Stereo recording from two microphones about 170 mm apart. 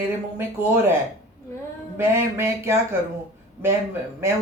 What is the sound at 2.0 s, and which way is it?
Speech, 15° right (ahead or behind).